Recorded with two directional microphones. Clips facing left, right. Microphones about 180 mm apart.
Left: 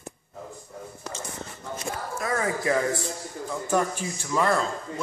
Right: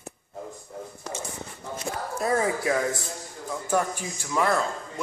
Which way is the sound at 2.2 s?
30° right (ahead or behind).